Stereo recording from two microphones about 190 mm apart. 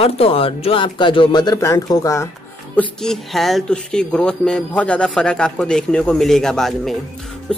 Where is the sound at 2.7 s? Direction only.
Centre (ahead or behind).